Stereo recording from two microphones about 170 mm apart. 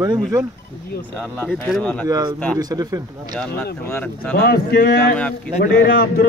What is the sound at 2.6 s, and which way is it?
Speech, 20° right (ahead or behind).